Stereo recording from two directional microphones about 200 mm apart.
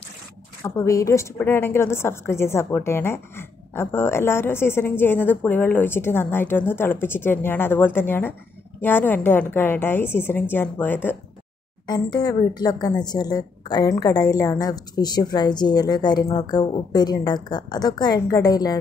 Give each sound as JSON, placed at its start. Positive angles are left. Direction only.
{"t": 0.7, "sound": "a woman's voice", "side_deg": 15}
{"t": 11.8, "sound": "a woman's voice", "side_deg": 20}